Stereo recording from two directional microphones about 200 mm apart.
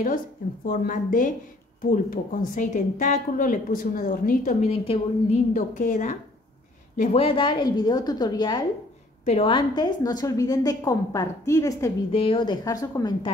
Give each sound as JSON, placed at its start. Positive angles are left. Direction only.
{"t": 0.7, "sound": "a woman's voice", "side_deg": 45}
{"t": 4.6, "sound": "a woman's voice", "side_deg": 30}
{"t": 5.5, "sound": "a woman's voice", "side_deg": 40}
{"t": 7.0, "sound": "a woman's voice", "side_deg": 30}
{"t": 12.1, "sound": "a woman's voice", "side_deg": 25}